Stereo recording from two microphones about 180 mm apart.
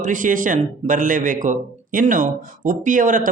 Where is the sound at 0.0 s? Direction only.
45° right (ahead or behind).